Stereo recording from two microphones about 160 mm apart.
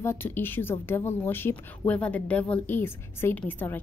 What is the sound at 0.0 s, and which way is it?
Speech, 15° left (ahead or behind).